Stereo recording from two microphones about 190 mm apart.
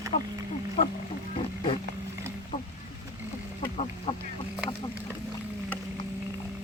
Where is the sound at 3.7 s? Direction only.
35° left (ahead or behind).